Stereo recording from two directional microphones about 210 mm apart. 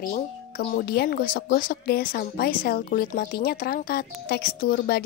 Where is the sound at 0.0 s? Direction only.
45° left (ahead or behind).